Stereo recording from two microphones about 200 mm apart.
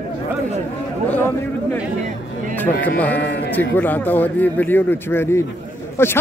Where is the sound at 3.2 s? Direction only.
60° left (ahead or behind).